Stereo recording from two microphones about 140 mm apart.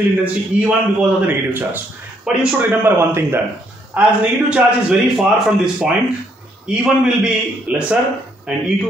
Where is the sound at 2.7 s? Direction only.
15° right (ahead or behind).